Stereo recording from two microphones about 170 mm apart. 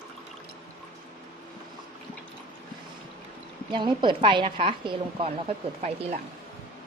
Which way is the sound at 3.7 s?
30° right (ahead or behind).